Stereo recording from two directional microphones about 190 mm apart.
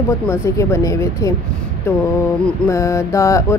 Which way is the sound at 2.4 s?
15° left (ahead or behind).